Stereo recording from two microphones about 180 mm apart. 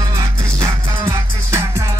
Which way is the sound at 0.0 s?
20° right (ahead or behind).